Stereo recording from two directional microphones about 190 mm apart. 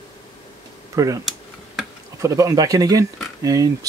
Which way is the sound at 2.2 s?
15° right (ahead or behind).